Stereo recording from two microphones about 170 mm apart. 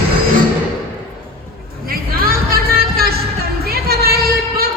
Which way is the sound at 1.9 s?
60° right (ahead or behind).